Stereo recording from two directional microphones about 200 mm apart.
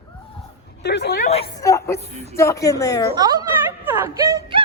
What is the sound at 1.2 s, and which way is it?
Speech, 30° left (ahead or behind).